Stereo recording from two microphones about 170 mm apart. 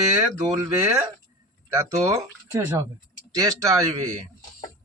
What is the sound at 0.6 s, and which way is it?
Speech, 15° right (ahead or behind).